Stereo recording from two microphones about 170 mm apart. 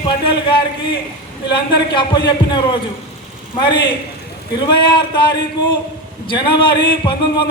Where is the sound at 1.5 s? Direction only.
30° left (ahead or behind).